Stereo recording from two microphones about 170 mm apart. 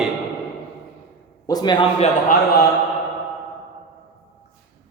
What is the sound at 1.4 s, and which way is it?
Speech, 25° left (ahead or behind).